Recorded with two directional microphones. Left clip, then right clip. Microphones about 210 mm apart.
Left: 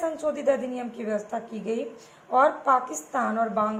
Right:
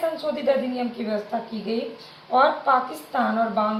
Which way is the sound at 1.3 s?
40° left (ahead or behind).